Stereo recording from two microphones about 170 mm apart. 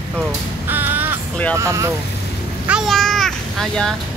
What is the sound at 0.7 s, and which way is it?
Crow, 10° right (ahead or behind).